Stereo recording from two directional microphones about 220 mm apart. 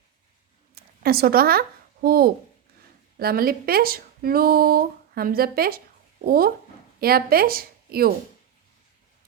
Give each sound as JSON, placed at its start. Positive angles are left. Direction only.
{"t": 0.8, "sound": "speech", "side_deg": -45}